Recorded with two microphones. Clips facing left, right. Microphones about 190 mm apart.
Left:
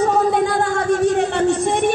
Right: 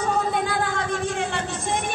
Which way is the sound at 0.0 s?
60° left (ahead or behind).